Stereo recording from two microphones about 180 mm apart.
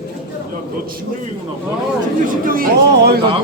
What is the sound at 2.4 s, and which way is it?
Speech, 55° right (ahead or behind).